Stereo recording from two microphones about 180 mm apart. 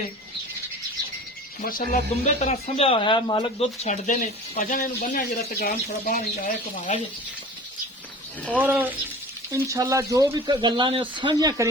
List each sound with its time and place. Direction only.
1.6 s speech: 50° left (ahead or behind)
8.5 s speech: 10° right (ahead or behind)